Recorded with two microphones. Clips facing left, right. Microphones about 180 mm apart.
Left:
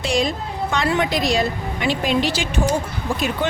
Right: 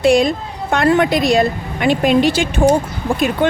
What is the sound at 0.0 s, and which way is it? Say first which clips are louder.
A woman's voice: right 8 dB; 55° right (ahead or behind).